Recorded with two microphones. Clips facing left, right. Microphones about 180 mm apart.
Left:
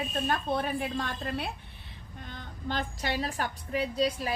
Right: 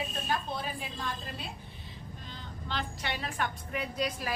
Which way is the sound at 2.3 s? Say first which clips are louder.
Left 4 dB; 45° left (ahead or behind).